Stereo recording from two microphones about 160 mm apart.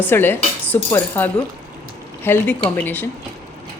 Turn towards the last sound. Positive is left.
turn(degrees=10)  # may be behind; listen again after turning